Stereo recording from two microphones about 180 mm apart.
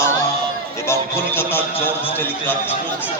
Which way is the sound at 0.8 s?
10° left (ahead or behind).